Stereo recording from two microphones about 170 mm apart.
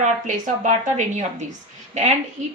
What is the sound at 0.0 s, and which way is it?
A woman's voice, 45° right (ahead or behind).